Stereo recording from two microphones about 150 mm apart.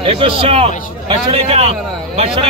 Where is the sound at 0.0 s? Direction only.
40° right (ahead or behind).